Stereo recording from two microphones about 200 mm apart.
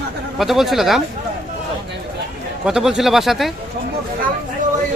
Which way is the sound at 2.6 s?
5° right (ahead or behind).